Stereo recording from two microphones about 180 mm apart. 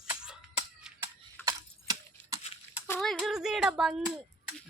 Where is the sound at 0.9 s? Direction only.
10° right (ahead or behind).